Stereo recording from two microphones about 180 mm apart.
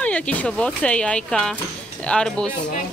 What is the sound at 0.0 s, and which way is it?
Speech, 5° left (ahead or behind).